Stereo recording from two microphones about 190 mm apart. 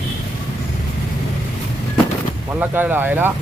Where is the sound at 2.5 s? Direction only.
10° right (ahead or behind).